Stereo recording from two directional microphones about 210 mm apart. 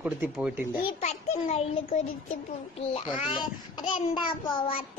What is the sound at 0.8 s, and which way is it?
Speech, 35° left (ahead or behind).